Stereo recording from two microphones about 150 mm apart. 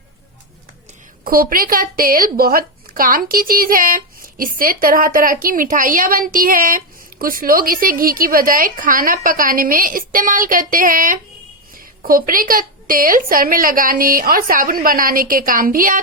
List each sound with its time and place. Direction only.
1.2 s a woman's voice: 75° right (ahead or behind)